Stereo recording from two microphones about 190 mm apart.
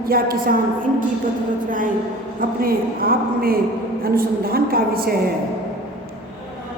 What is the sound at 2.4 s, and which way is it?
A woman's voice, 50° right (ahead or behind).